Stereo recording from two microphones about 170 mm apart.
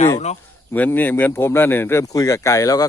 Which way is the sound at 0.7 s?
10° left (ahead or behind).